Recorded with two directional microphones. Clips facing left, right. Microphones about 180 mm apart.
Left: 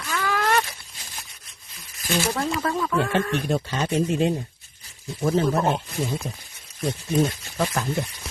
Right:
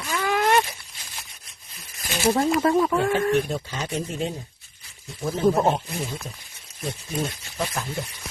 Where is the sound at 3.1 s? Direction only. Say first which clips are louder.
Right 2 dB; 70° left (ahead or behind).